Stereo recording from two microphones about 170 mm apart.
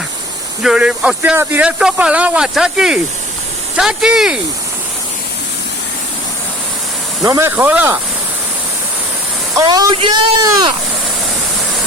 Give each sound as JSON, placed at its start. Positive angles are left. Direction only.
{"t": 0.6, "sound": "speech", "side_deg": -5}
{"t": 7.3, "sound": "speech", "side_deg": -15}
{"t": 9.6, "sound": "speech", "side_deg": -25}